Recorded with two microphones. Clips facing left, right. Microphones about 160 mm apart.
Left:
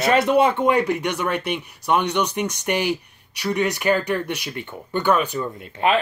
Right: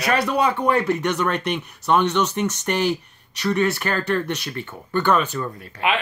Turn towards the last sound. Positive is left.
turn(degrees=40)  # may be behind; listen again after turning